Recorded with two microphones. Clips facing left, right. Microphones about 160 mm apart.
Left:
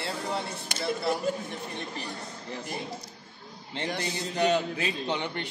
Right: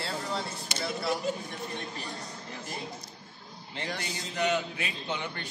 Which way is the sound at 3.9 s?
35° left (ahead or behind).